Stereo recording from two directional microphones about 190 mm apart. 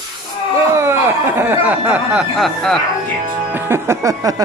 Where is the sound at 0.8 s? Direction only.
15° right (ahead or behind).